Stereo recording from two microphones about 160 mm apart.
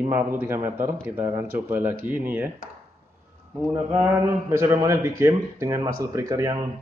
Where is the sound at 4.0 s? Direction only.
15° right (ahead or behind).